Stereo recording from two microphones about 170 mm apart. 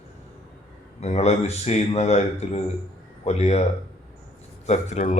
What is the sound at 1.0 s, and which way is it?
A man's voice, 40° left (ahead or behind).